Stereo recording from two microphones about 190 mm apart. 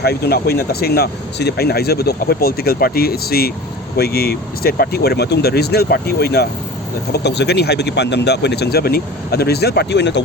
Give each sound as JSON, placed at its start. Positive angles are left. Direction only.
{"t": 0.0, "sound": "speech", "side_deg": 60}